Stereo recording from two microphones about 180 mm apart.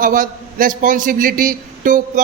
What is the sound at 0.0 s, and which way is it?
A man's voice, 50° right (ahead or behind).